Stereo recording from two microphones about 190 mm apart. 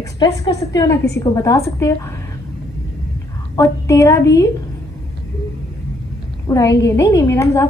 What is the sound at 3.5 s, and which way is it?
Speech, 15° left (ahead or behind).